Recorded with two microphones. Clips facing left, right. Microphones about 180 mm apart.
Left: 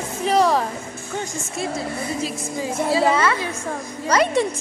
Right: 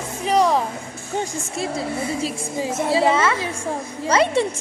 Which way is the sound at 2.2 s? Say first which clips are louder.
Right 1 dB; 25° right (ahead or behind).